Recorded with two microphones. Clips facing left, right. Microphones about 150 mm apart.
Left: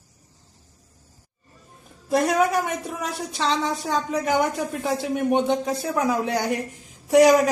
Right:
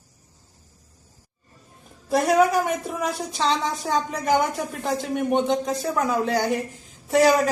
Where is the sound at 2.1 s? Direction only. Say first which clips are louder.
Right 2 dB; centre (ahead or behind).